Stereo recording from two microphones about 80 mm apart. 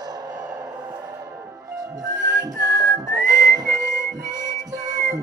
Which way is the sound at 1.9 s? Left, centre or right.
Right.